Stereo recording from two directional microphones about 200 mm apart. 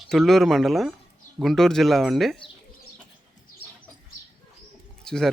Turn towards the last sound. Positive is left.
turn(degrees=5)  # may be behind; listen again after turning